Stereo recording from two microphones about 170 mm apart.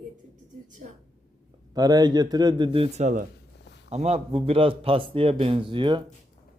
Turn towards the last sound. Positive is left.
turn(degrees=-30)  # may be behind; listen again after turning